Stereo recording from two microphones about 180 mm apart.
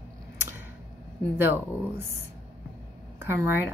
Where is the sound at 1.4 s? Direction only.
10° right (ahead or behind).